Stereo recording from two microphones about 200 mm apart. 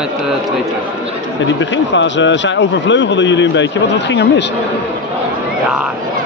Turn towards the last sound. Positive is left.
turn(degrees=60)  # may be behind; listen again after turning